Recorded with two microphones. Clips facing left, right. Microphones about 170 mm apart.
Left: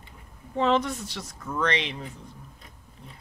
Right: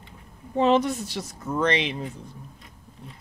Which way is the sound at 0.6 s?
20° right (ahead or behind).